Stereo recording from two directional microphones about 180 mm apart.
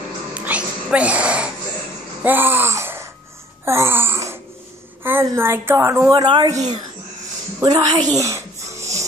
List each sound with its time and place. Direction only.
0.3 s music: 5° right (ahead or behind)
2.2 s speech: 10° right (ahead or behind)
3.6 s wail: 15° right (ahead or behind)
5.0 s a woman's voice: 15° right (ahead or behind)
8.2 s wheeze: 15° right (ahead or behind)